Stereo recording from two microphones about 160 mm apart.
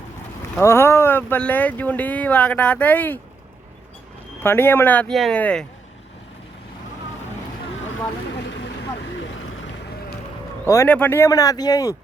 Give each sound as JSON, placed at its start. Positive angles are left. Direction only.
{"t": 0.6, "sound": "speech", "side_deg": 15}
{"t": 4.4, "sound": "speech", "side_deg": 15}
{"t": 8.4, "sound": "vehicle", "side_deg": 90}
{"t": 10.7, "sound": "speech", "side_deg": 20}